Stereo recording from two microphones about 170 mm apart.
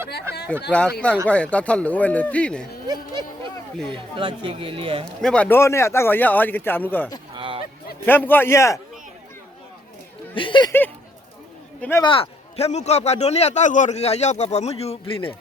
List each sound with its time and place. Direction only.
0.7 s a man's voice: 5° left (ahead or behind)
2.8 s a sound: 25° right (ahead or behind)
3.8 s speech: 30° right (ahead or behind)
5.0 s a man's voice: 5° left (ahead or behind)
7.3 s a sound: 30° right (ahead or behind)
8.0 s a man's voice: 10° left (ahead or behind)
10.3 s speech: 30° left (ahead or behind)
10.7 s a man's voice: 10° left (ahead or behind)
12.0 s a man's voice: 30° left (ahead or behind)